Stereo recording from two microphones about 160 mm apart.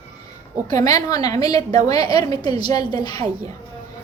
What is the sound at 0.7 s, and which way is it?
A child's voice, 20° left (ahead or behind).